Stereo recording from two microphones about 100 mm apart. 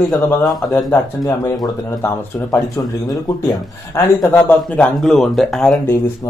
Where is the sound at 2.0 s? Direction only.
25° left (ahead or behind).